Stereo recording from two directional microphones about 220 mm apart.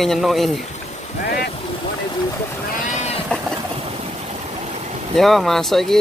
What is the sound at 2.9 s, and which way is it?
Sheep, 30° left (ahead or behind).